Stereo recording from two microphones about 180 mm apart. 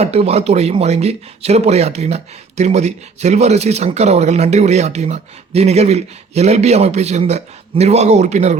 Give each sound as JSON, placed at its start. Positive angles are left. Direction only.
{"t": 0.0, "sound": "speech", "side_deg": -35}